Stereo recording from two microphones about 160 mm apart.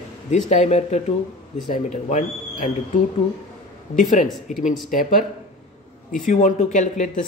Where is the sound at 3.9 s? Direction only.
50° left (ahead or behind).